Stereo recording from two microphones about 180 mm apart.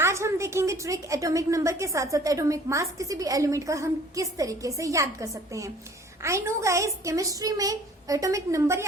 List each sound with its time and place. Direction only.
0.0 s a woman's voice: 15° right (ahead or behind)